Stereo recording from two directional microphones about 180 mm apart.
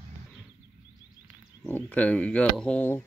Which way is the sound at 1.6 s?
10° left (ahead or behind).